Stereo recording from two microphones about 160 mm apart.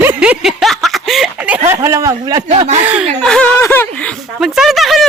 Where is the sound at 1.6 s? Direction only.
20° right (ahead or behind).